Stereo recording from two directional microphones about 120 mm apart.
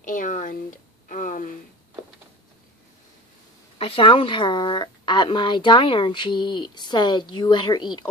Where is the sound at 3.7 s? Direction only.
50° left (ahead or behind).